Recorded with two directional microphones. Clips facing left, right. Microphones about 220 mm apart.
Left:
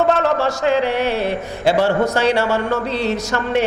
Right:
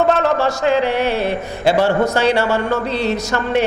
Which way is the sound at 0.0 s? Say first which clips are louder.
Right 1 dB; 20° right (ahead or behind).